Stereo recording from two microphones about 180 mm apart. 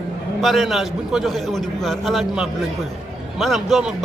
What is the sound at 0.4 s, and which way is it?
A man's voice, centre (ahead or behind).